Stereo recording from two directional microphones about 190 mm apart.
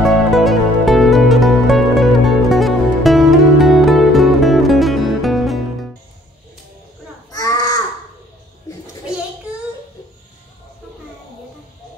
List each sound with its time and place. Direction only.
0.0 s music: centre (ahead or behind)
7.2 s baby cry: 15° left (ahead or behind)